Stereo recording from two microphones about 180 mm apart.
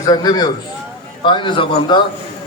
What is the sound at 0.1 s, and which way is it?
A man's voice, 20° left (ahead or behind).